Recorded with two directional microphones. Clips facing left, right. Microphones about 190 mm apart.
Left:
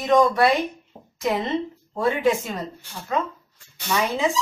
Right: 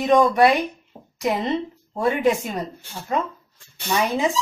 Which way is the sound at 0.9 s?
10° left (ahead or behind).